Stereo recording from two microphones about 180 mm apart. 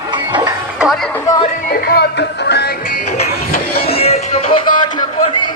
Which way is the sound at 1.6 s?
60° left (ahead or behind).